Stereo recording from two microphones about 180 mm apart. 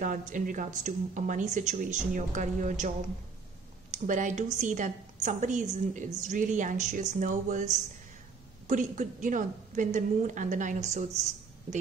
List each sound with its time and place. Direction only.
0.0 s a woman's voice: 45° right (ahead or behind)
3.9 s a woman's voice: 45° right (ahead or behind)